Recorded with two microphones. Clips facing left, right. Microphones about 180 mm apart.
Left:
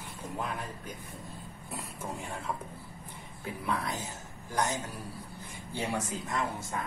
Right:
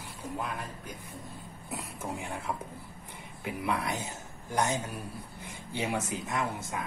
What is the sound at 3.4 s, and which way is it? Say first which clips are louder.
Speech: right 2 dB; 15° right (ahead or behind).